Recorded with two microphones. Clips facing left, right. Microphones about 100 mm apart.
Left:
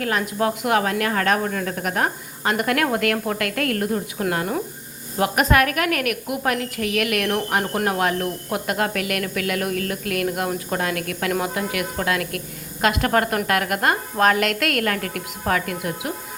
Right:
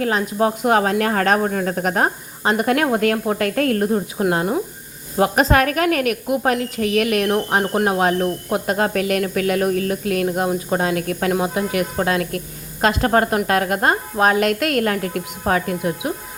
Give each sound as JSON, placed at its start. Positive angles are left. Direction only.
{"t": 0.0, "sound": "a woman's voice", "side_deg": -25}